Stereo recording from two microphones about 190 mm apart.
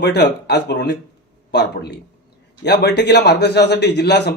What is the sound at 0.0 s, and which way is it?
A man's voice, 60° left (ahead or behind).